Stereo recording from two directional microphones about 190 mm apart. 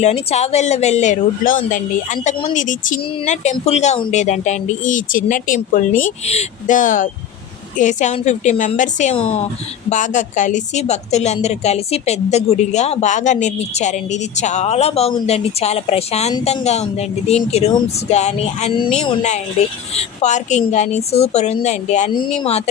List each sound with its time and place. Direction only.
0.0 s speech: 35° left (ahead or behind)
19.9 s speech: 35° left (ahead or behind)